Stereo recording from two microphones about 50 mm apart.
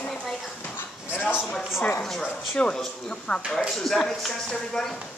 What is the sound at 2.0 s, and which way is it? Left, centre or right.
Speech, centre.